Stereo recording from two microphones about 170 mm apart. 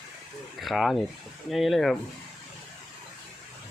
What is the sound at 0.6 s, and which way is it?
Speech, centre (ahead or behind).